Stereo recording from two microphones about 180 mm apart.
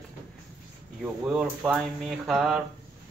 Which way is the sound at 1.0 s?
5° right (ahead or behind).